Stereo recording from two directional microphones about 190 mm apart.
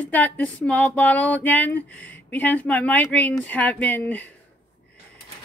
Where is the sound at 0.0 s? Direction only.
10° left (ahead or behind).